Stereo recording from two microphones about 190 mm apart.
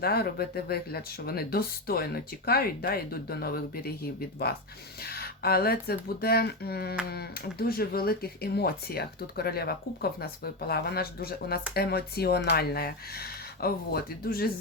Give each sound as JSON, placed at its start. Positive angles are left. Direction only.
{"t": 0.0, "sound": "speech", "side_deg": 55}
{"t": 5.0, "sound": "speech", "side_deg": 55}